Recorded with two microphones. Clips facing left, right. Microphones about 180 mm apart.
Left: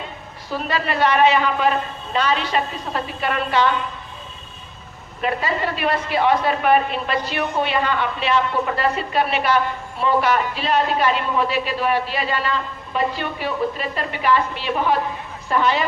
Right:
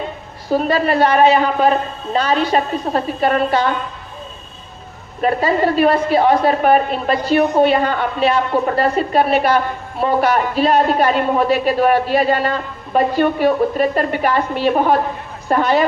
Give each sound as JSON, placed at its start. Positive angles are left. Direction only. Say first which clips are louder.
{"t": 0.5, "sound": "a man's voice", "louder": "right 8 dB", "side_deg": -40}
{"t": 5.2, "sound": "a man's voice", "louder": "right 7 dB", "side_deg": -40}